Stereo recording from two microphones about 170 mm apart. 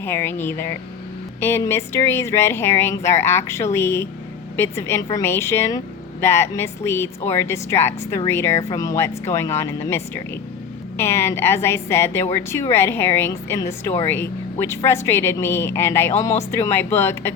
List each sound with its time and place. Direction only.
0.0 s speech: 15° left (ahead or behind)